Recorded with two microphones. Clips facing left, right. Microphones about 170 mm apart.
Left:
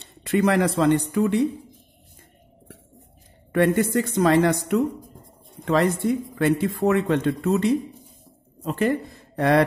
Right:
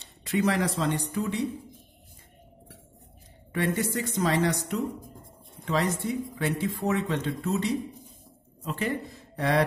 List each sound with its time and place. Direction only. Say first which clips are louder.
0.0 s speech: left 5 dB; 60° left (ahead or behind)
3.5 s speech: left 8 dB; 60° left (ahead or behind)